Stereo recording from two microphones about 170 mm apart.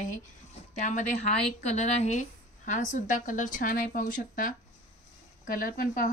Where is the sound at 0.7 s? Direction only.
45° left (ahead or behind).